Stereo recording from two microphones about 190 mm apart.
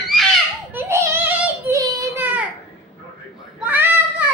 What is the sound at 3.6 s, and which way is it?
Child singing, 10° right (ahead or behind).